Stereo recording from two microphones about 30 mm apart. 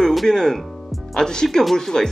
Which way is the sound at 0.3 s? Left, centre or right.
Left.